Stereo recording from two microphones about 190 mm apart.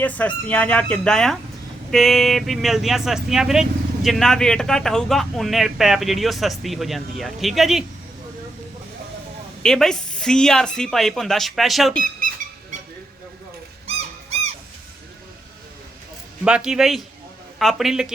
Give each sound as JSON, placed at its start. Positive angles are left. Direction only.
{"t": 0.0, "sound": "speech", "side_deg": 10}
{"t": 9.6, "sound": "speech", "side_deg": 0}
{"t": 13.8, "sound": "dog", "side_deg": -35}
{"t": 16.4, "sound": "speech", "side_deg": -5}